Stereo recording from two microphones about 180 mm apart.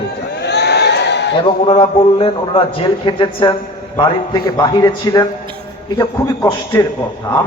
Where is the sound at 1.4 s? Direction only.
30° left (ahead or behind).